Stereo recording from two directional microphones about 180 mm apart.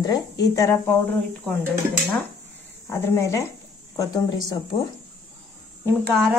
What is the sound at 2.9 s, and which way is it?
A woman's voice, 15° left (ahead or behind).